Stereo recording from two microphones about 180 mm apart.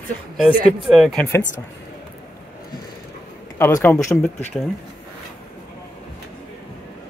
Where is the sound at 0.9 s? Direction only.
Centre (ahead or behind).